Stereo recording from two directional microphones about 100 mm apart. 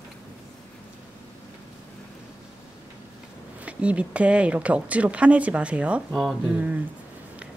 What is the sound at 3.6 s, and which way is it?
Speech, 15° right (ahead or behind).